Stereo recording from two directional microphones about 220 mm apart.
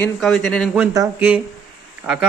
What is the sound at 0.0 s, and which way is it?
Speech, centre (ahead or behind).